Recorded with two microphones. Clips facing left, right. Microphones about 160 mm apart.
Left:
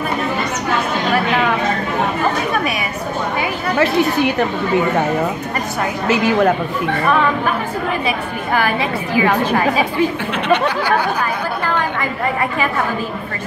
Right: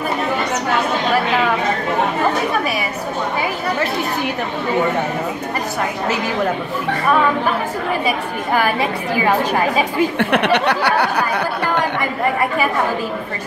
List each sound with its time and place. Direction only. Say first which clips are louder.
10.1 s speech: right 1 dB; 65° right (ahead or behind)